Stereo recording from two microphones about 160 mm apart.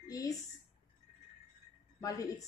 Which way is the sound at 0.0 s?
20° left (ahead or behind).